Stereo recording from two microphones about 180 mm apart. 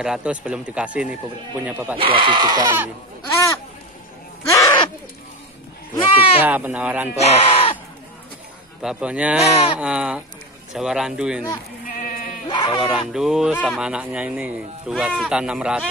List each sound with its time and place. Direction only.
0.0 s speech: 5° right (ahead or behind)
2.0 s speech: 30° right (ahead or behind)
4.5 s owl: 20° left (ahead or behind)
6.1 s speech: 30° left (ahead or behind)
6.4 s speech: 10° right (ahead or behind)
7.2 s speech: 35° left (ahead or behind)
8.8 s speech: 5° right (ahead or behind)
12.4 s sheep: 25° left (ahead or behind)
12.8 s speech: 5° right (ahead or behind)